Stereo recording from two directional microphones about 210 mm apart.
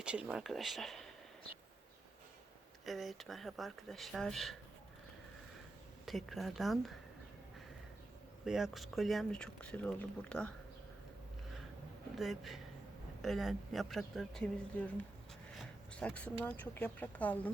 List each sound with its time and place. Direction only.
0.0 s speech: 5° right (ahead or behind)
2.8 s speech: centre (ahead or behind)
6.1 s speech: centre (ahead or behind)
8.4 s speech: centre (ahead or behind)
12.1 s speech: centre (ahead or behind)